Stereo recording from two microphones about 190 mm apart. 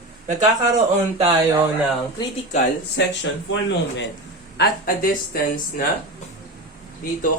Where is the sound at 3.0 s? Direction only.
65° left (ahead or behind).